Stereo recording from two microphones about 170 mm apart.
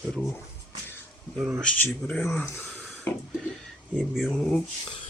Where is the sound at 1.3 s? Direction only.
10° right (ahead or behind).